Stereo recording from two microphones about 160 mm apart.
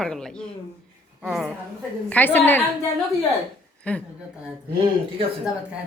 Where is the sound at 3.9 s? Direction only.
10° left (ahead or behind).